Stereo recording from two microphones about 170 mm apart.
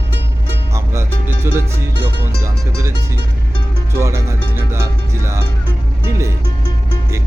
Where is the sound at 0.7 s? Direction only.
15° right (ahead or behind).